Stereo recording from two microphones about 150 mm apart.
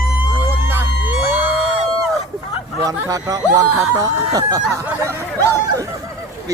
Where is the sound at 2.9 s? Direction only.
20° right (ahead or behind).